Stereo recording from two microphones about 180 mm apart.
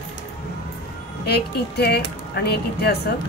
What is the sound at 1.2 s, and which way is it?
A woman's voice, 65° left (ahead or behind).